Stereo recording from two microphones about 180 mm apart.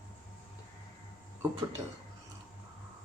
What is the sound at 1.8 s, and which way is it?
Speech, 25° right (ahead or behind).